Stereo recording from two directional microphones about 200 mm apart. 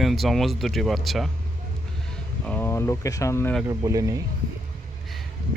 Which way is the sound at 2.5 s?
10° left (ahead or behind).